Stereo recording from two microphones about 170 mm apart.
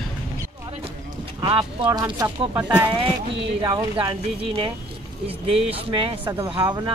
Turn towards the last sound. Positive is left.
turn(degrees=-25)  # may be behind; listen again after turning